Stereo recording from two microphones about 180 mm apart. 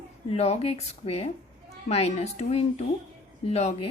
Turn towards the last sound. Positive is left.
turn(degrees=35)  # may be behind; listen again after turning